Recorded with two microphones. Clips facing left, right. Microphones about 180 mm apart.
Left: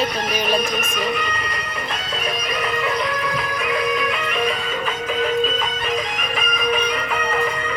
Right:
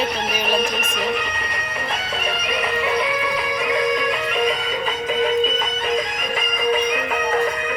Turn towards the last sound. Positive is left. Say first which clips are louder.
# right 1 dB
turn(degrees=-25)  # may be behind; listen again after turning